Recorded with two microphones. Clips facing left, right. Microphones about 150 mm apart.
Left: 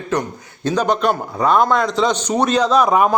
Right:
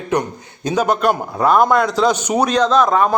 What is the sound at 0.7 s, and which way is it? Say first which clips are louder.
A man's voice: right 1 dB; 5° right (ahead or behind).